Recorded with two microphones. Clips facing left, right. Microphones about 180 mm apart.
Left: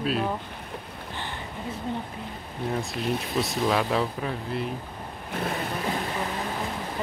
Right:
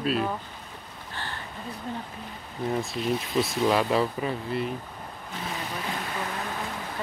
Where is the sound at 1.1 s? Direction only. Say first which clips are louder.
Left 1 dB; 15° left (ahead or behind).